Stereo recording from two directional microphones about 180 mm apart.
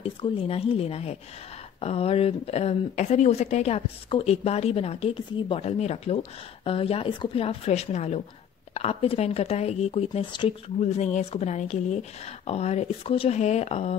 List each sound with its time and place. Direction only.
0.0 s a woman's voice: 30° left (ahead or behind)
10.8 s a woman's voice: 40° left (ahead or behind)